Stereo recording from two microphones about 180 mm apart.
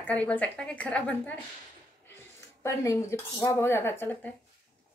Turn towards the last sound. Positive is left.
turn(degrees=10)  # may be behind; listen again after turning